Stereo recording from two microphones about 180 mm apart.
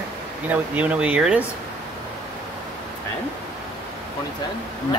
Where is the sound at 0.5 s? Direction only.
10° right (ahead or behind).